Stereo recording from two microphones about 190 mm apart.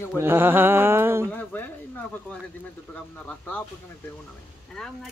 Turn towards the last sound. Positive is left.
turn(degrees=0)  # may be behind; listen again after turning